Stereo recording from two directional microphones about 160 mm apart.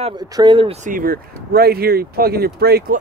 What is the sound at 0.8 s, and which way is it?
Speech, 60° right (ahead or behind).